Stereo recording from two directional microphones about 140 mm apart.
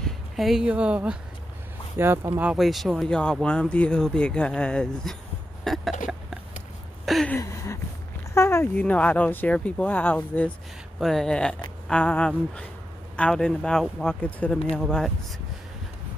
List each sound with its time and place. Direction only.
0.0 s speech: centre (ahead or behind)
5.6 s cough: centre (ahead or behind)
7.2 s a sound: 20° left (ahead or behind)
8.4 s speech: 20° left (ahead or behind); by 15.1 s 5° left (ahead or behind)